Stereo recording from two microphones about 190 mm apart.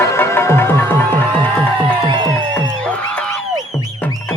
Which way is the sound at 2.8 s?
5° left (ahead or behind).